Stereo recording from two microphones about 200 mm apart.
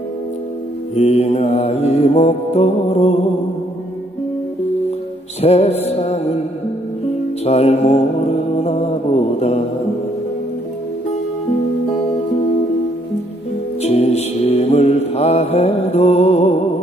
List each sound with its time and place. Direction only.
0.9 s mantra: 30° left (ahead or behind)
5.4 s mantra: 30° left (ahead or behind)
7.4 s mantra: 30° left (ahead or behind)
13.8 s mantra: 30° left (ahead or behind)